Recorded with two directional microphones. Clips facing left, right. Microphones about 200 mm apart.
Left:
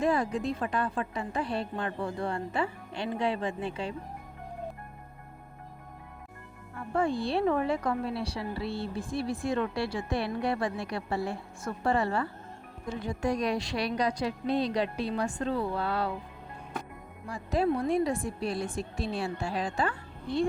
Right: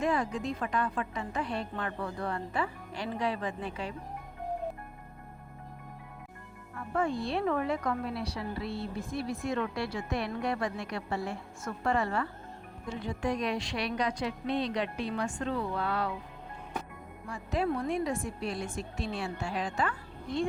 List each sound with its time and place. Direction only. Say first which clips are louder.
0.0 s a woman's voice: left 3 dB; 35° left (ahead or behind)
6.7 s speech: left 2 dB; 30° left (ahead or behind)
17.2 s speech: left 3 dB; 35° left (ahead or behind)